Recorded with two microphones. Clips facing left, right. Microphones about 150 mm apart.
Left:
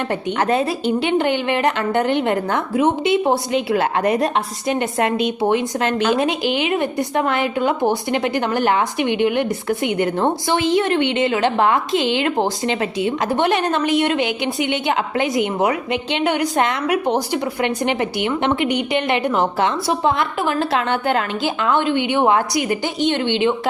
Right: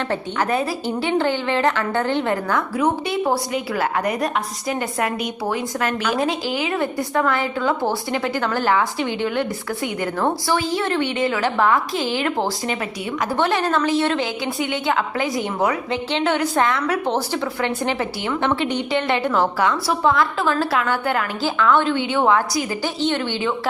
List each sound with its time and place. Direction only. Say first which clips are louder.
0.1 s a woman's voice: left 4 dB; 25° left (ahead or behind)